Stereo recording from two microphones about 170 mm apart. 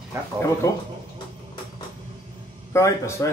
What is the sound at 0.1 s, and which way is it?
Speech, 15° right (ahead or behind).